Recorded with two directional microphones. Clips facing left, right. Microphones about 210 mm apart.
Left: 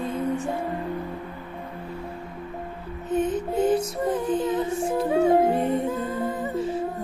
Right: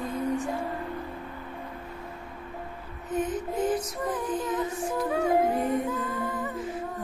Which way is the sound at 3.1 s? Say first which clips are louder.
Left 5 dB; 25° left (ahead or behind).